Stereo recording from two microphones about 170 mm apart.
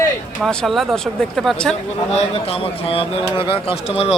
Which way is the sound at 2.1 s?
35° left (ahead or behind).